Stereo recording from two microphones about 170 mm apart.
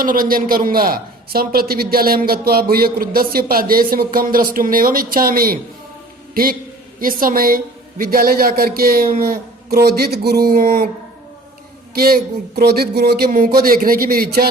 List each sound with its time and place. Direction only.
0.0 s a man's voice: 55° right (ahead or behind)
11.9 s a sound: 65° right (ahead or behind)
13.3 s a man's voice: 55° right (ahead or behind)